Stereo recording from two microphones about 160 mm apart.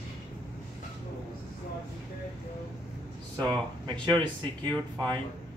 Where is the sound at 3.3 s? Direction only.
25° right (ahead or behind).